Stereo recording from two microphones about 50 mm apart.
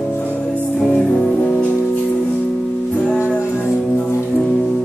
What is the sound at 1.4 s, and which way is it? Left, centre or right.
Music, left.